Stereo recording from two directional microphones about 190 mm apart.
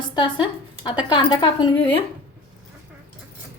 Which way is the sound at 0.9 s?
20° left (ahead or behind).